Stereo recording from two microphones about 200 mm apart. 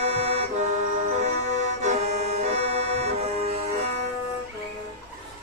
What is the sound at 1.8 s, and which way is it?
Music, 35° right (ahead or behind).